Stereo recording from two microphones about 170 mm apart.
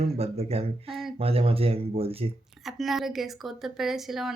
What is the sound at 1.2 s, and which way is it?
Speech, 35° right (ahead or behind).